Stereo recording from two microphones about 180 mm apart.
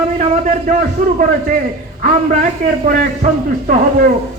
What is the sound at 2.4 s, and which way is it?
Speech, 45° right (ahead or behind).